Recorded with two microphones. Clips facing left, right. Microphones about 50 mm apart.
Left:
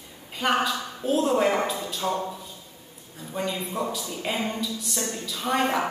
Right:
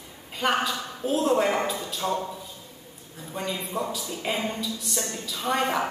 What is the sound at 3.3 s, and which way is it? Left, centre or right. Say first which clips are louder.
Speech: left 2 dB; centre.